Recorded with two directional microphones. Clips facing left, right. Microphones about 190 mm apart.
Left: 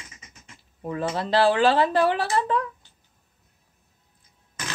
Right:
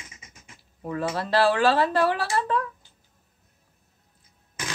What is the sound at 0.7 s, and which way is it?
Speech, 20° left (ahead or behind).